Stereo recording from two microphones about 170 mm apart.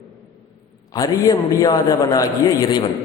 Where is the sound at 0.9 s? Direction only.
20° left (ahead or behind).